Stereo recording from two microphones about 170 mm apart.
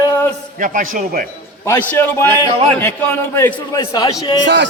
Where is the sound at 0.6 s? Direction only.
50° right (ahead or behind).